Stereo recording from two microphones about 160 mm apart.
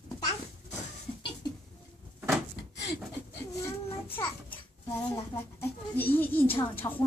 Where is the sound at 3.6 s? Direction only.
15° left (ahead or behind).